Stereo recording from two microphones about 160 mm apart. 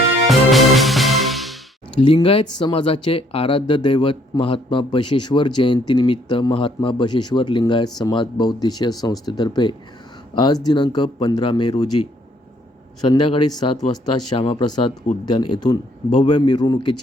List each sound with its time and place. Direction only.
0.3 s music: centre (ahead or behind)
2.0 s speech: 35° left (ahead or behind)
13.1 s speech: 30° left (ahead or behind)